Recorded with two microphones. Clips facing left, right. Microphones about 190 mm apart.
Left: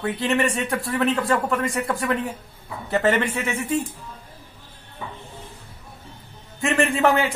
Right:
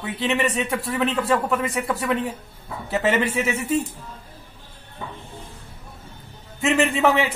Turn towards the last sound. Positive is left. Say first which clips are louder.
# even
turn(degrees=0)  # may be behind; listen again after turning